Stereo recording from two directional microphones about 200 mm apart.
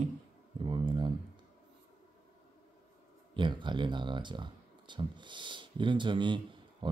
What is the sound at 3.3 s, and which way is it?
Speech, 25° right (ahead or behind).